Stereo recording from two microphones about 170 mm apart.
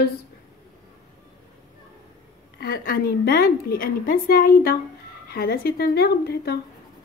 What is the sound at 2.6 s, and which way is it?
A woman's voice, 60° left (ahead or behind).